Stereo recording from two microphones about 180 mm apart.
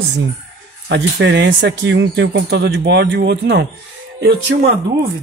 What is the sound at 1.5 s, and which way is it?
Speech, 70° right (ahead or behind).